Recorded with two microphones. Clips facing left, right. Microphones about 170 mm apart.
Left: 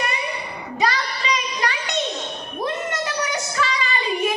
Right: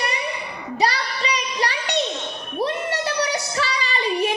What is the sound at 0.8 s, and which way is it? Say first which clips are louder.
Child singing: right 1 dB; 35° right (ahead or behind).